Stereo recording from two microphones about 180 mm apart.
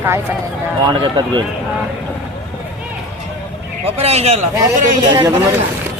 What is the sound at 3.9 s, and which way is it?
Speech, 35° right (ahead or behind).